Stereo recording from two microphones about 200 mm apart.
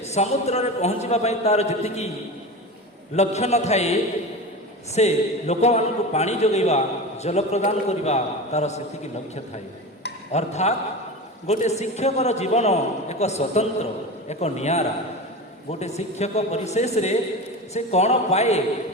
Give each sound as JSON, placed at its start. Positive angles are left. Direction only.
{"t": 0.1, "sound": "a man's voice", "side_deg": 35}
{"t": 3.2, "sound": "a man's voice", "side_deg": 35}
{"t": 4.9, "sound": "a man's voice", "side_deg": 35}
{"t": 10.3, "sound": "a man's voice", "side_deg": 35}